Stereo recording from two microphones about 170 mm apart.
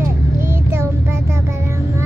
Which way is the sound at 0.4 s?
15° right (ahead or behind).